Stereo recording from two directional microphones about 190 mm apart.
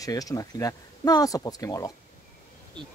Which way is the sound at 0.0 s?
20° left (ahead or behind).